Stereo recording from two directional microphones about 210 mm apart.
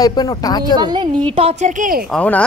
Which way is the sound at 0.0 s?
20° left (ahead or behind).